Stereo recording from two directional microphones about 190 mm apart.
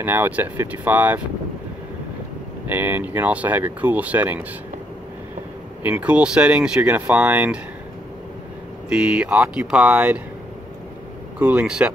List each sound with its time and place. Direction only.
0.0 s speech: 10° right (ahead or behind)
2.7 s speech: 10° right (ahead or behind)
5.9 s speech: 5° right (ahead or behind)
8.8 s speech: 5° right (ahead or behind)
11.3 s speech: 5° right (ahead or behind)